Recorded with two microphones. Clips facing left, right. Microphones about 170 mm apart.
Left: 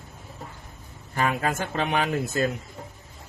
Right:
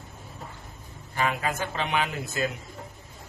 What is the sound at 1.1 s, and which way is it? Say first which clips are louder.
Speech: left 2 dB; 45° left (ahead or behind).